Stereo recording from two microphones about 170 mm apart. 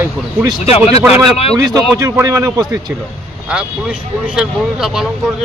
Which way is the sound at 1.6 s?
20° right (ahead or behind).